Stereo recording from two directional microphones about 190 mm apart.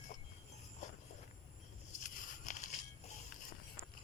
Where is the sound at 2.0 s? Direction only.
40° left (ahead or behind).